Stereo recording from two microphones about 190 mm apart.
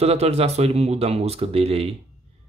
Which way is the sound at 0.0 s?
35° right (ahead or behind).